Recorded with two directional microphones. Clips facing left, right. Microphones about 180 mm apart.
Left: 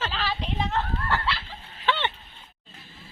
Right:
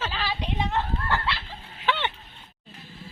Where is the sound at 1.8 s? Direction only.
10° right (ahead or behind).